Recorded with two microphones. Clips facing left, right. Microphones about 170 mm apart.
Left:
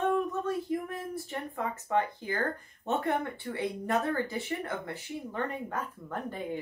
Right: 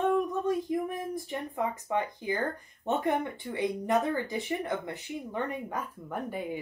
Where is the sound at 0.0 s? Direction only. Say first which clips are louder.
Right 2 dB; 15° right (ahead or behind).